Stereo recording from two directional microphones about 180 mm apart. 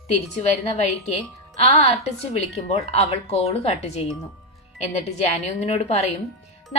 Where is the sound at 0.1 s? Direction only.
40° left (ahead or behind).